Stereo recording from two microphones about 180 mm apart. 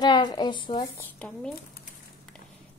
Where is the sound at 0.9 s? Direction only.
5° left (ahead or behind).